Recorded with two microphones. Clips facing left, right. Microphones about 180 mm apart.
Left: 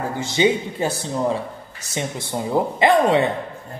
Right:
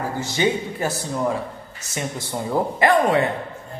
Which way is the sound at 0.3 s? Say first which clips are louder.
Left 4 dB; 20° left (ahead or behind).